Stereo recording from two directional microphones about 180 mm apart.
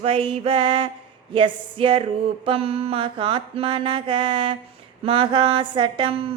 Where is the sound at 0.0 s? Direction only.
30° right (ahead or behind).